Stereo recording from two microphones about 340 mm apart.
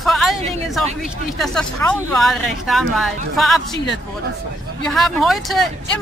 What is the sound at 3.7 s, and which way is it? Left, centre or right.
Speech, left.